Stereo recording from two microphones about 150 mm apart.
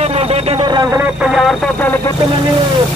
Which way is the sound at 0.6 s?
30° right (ahead or behind).